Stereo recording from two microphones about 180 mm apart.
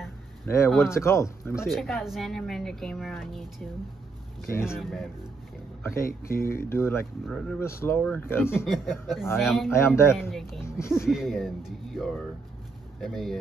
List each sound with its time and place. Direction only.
0.5 s speech: 10° left (ahead or behind)
1.7 s speech: centre (ahead or behind)
4.5 s speech: 15° left (ahead or behind)
4.7 s speech: centre (ahead or behind)
6.0 s speech: 15° left (ahead or behind)
7.2 s speech: 5° left (ahead or behind)
7.6 s speech: 15° left (ahead or behind)
8.6 s speech: centre (ahead or behind)
9.7 s speech: 15° left (ahead or behind)
11.1 s speech: centre (ahead or behind)